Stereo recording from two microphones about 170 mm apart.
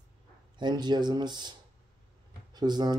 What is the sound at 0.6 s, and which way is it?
Speech, 25° right (ahead or behind).